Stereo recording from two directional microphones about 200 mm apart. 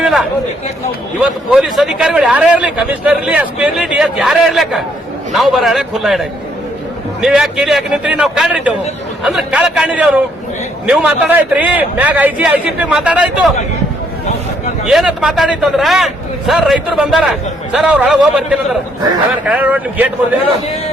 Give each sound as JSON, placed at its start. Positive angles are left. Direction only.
{"t": 0.0, "sound": "chatter", "side_deg": 0}
{"t": 1.2, "sound": "a man's voice", "side_deg": 0}
{"t": 14.8, "sound": "a man's voice", "side_deg": -5}